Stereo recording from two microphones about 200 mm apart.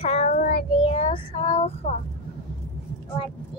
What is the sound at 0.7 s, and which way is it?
Child singing, 25° left (ahead or behind).